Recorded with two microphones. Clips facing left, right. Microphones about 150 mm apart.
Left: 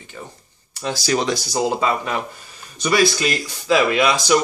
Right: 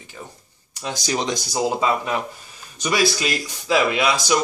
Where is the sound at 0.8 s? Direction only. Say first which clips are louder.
Left 4 dB; 20° right (ahead or behind).